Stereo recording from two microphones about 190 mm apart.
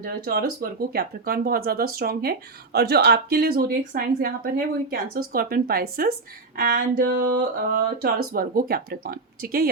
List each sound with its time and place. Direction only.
0.0 s a woman's voice: 50° right (ahead or behind)